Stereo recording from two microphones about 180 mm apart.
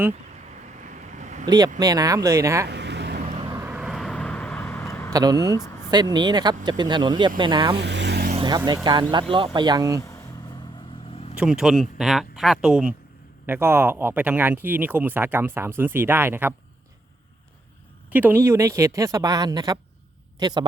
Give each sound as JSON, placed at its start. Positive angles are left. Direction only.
{"t": 0.8, "sound": "vehicle", "side_deg": -45}
{"t": 1.5, "sound": "speech", "side_deg": -20}
{"t": 2.6, "sound": "a sound", "side_deg": -70}
{"t": 3.2, "sound": "vehicle", "side_deg": -25}
{"t": 3.5, "sound": "vehicle", "side_deg": -10}
{"t": 5.1, "sound": "speech", "side_deg": -20}
{"t": 5.5, "sound": "vehicle", "side_deg": 15}
{"t": 5.9, "sound": "speech", "side_deg": -20}
{"t": 7.8, "sound": "vehicle", "side_deg": -75}
{"t": 8.4, "sound": "speech", "side_deg": -25}
{"t": 11.1, "sound": "vehicle", "side_deg": 35}
{"t": 11.3, "sound": "speech", "side_deg": -5}
{"t": 18.1, "sound": "speech", "side_deg": -10}